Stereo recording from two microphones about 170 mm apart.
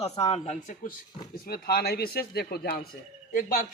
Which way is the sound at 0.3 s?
45° left (ahead or behind).